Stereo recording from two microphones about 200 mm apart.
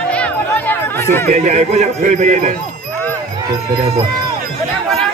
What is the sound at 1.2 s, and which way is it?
Speech, 35° right (ahead or behind).